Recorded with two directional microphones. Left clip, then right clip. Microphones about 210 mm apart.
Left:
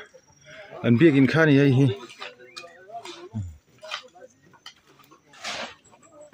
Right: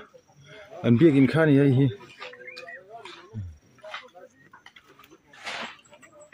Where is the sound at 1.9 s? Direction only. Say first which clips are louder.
Left 2 dB; 50° left (ahead or behind).